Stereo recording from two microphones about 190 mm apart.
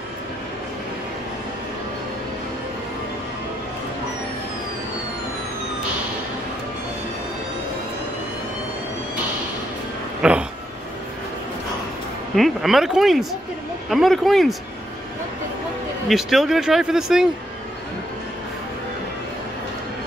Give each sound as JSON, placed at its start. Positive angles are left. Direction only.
{"t": 10.2, "sound": "a sound", "side_deg": -5}
{"t": 12.4, "sound": "speech", "side_deg": 0}
{"t": 16.1, "sound": "speech", "side_deg": 0}